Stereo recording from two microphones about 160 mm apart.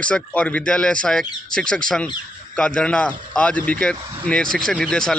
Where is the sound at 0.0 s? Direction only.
5° left (ahead or behind).